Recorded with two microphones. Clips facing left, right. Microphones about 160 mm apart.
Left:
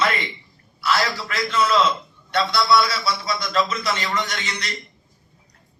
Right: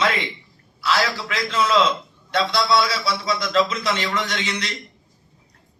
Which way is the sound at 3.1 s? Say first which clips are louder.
Right 2 dB; 90° right.